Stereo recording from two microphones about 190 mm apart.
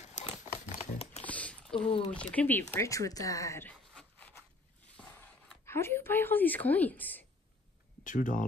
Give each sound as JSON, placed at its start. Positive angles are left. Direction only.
{"t": 0.0, "sound": "a sound", "side_deg": 35}
{"t": 1.2, "sound": "squish", "side_deg": 5}
{"t": 1.8, "sound": "speech", "side_deg": 25}
{"t": 2.1, "sound": "speech", "side_deg": 10}
{"t": 4.9, "sound": "a sound", "side_deg": 5}
{"t": 8.0, "sound": "speech", "side_deg": 45}